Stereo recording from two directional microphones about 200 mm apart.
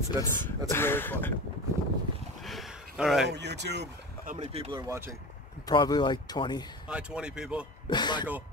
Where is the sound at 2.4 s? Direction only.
Centre (ahead or behind).